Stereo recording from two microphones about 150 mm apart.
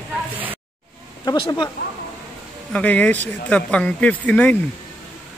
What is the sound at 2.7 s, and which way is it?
Speech, 10° left (ahead or behind).